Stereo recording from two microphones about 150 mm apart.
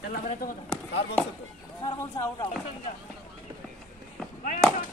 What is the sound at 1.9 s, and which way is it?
Speech, 20° left (ahead or behind).